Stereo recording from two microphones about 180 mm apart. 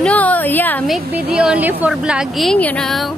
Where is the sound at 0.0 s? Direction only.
10° left (ahead or behind).